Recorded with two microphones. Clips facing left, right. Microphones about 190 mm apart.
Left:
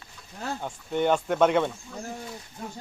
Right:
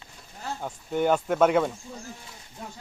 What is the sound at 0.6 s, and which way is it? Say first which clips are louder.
Speech: right 1 dB; 5° right (ahead or behind).